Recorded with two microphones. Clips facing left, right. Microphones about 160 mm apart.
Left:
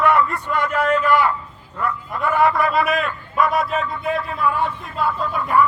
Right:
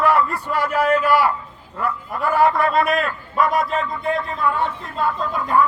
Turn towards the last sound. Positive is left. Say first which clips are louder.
# even
turn(degrees=10)  # may be behind; listen again after turning